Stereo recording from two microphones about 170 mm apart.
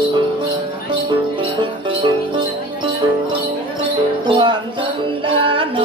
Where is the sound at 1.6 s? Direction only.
30° right (ahead or behind).